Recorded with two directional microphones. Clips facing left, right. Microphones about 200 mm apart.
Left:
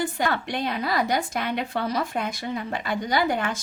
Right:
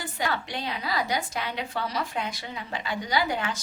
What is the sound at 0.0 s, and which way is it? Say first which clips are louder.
A woman's voice: left 5 dB; 55° left (ahead or behind).